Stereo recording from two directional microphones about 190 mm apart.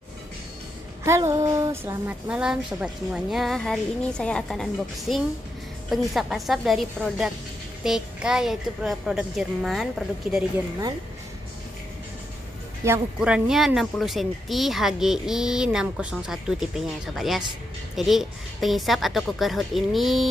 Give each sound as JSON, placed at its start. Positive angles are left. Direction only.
{"t": 1.0, "sound": "speech", "side_deg": -15}
{"t": 12.8, "sound": "speech", "side_deg": -10}